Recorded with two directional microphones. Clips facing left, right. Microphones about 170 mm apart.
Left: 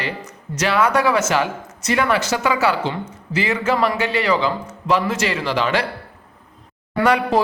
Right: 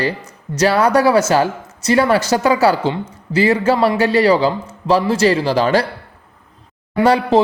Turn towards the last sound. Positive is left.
turn(degrees=-30)  # may be behind; listen again after turning